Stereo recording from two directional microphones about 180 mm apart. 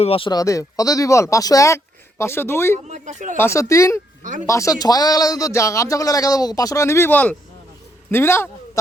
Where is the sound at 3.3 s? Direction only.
15° left (ahead or behind).